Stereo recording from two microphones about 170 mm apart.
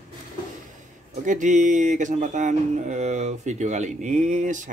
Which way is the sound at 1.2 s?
45° right (ahead or behind).